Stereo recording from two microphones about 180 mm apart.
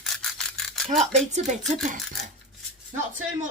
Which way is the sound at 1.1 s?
40° right (ahead or behind).